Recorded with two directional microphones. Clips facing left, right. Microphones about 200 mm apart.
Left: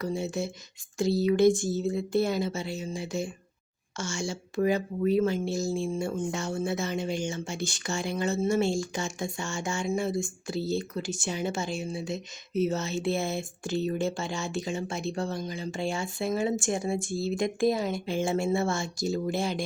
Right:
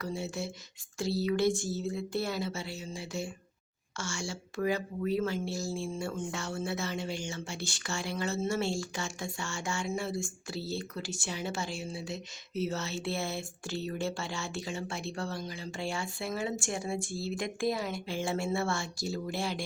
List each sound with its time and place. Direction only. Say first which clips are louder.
0.0 s speech: left 5 dB; 20° left (ahead or behind)